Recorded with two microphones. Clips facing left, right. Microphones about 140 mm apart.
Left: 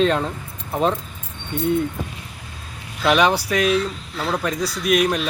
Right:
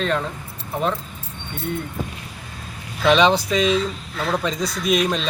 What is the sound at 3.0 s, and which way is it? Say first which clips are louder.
Speech: right 1 dB; 10° left (ahead or behind).